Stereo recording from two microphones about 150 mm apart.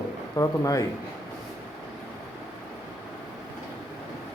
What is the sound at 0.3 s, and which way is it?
Speech, 20° left (ahead or behind).